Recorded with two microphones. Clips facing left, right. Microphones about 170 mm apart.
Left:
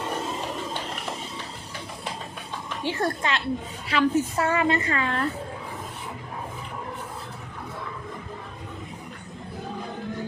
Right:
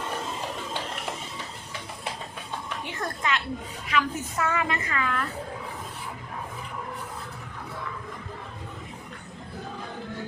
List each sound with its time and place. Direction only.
2.8 s a woman's voice: 30° left (ahead or behind)